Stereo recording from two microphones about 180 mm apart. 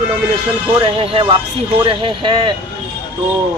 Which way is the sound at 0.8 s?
30° right (ahead or behind).